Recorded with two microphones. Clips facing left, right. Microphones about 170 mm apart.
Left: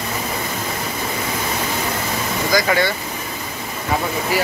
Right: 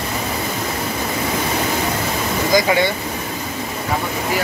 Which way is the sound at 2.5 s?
15° right (ahead or behind).